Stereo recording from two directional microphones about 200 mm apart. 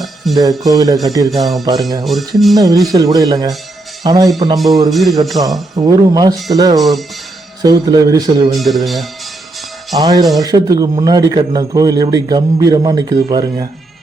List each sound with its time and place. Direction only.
0.0 s music: centre (ahead or behind)
0.6 s speech: 15° right (ahead or behind)
1.3 s speech: centre (ahead or behind)
2.6 s speech: 20° right (ahead or behind)
4.9 s speech: centre (ahead or behind)
5.4 s speech: 25° right (ahead or behind)
6.7 s speech: centre (ahead or behind)
7.6 s speech: 20° right (ahead or behind)
8.5 s speech: centre (ahead or behind)
10.0 s speech: 20° right (ahead or behind)